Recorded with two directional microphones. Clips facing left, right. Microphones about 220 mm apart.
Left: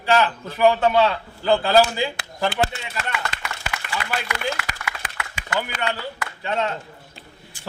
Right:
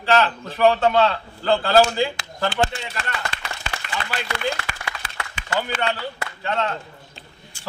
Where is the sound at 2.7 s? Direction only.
30° right (ahead or behind).